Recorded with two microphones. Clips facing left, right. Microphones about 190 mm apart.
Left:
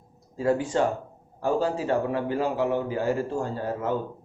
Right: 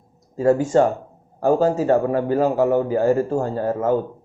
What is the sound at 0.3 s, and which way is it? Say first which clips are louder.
Speech: right 7 dB; 45° right (ahead or behind).